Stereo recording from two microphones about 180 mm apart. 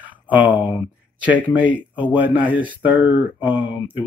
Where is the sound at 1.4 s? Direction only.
10° right (ahead or behind).